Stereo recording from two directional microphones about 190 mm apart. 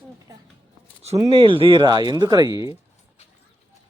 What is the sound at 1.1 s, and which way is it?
Speech, 20° right (ahead or behind).